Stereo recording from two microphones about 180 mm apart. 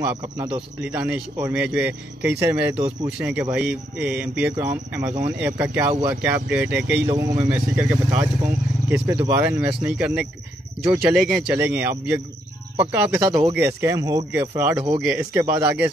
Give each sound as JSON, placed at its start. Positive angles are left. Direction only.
{"t": 0.7, "sound": "speech", "side_deg": -10}